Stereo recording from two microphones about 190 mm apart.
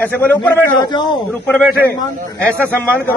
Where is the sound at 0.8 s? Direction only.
25° left (ahead or behind).